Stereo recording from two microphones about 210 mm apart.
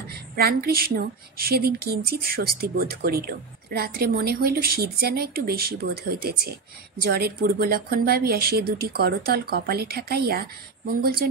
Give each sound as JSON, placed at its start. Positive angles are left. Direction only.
{"t": 0.4, "sound": "a woman's voice", "side_deg": -45}